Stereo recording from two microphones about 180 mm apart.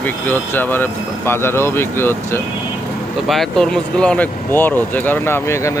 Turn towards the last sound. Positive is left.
turn(degrees=15)  # may be behind; listen again after turning